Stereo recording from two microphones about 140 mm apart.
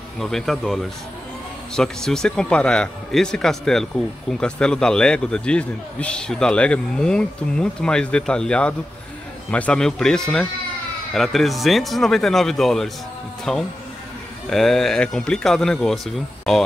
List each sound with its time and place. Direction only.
0.2 s a man's voice: 5° left (ahead or behind)
1.8 s a man's voice: 5° left (ahead or behind)